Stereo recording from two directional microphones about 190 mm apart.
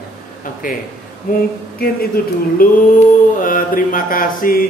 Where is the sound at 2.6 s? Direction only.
50° left (ahead or behind).